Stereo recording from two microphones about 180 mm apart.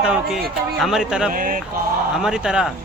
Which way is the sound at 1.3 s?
45° right (ahead or behind).